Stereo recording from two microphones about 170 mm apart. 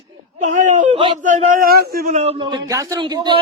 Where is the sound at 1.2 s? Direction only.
50° right (ahead or behind).